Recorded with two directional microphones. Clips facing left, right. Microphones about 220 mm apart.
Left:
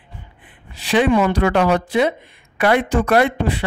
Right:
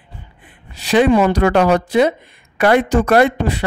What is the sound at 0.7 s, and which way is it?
Speech, 40° right (ahead or behind).